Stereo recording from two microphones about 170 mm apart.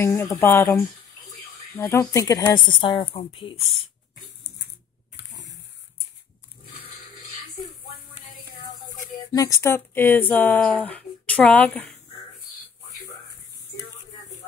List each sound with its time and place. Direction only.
0.0 s a woman's voice: 15° left (ahead or behind); by 3.5 s 30° left (ahead or behind)
5.1 s a sound: 90° left
9.3 s speech: 20° left (ahead or behind)